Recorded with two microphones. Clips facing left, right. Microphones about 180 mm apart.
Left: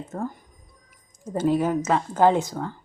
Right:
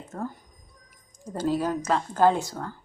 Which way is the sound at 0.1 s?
15° left (ahead or behind).